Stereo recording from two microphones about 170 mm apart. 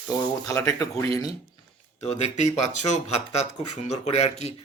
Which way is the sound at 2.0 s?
40° left (ahead or behind).